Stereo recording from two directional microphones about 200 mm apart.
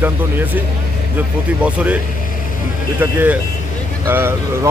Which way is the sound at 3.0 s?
10° right (ahead or behind).